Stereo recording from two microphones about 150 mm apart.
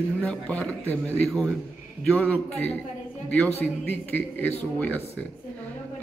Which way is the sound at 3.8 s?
10° left (ahead or behind).